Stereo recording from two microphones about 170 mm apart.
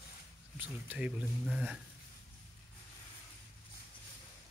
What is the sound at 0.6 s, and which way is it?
Speech, 10° right (ahead or behind).